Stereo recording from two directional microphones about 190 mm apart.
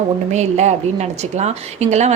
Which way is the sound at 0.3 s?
35° right (ahead or behind).